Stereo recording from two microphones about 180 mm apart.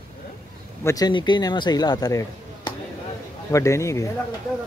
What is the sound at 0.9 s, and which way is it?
Speech, 20° left (ahead or behind).